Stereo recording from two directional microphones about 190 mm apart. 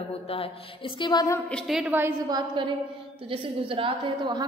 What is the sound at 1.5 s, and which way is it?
Speech, centre (ahead or behind).